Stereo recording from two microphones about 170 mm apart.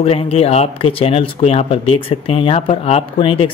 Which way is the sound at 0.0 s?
35° left (ahead or behind).